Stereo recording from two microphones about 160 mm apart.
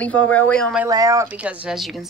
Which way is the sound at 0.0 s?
10° left (ahead or behind).